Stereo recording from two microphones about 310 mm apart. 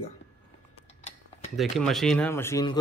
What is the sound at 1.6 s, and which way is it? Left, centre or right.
Speech, centre.